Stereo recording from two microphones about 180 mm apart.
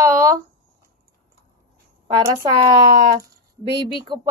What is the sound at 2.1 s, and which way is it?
Speech, 25° right (ahead or behind).